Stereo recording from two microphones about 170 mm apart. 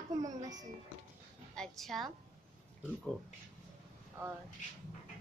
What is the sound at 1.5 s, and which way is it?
Speech, centre (ahead or behind).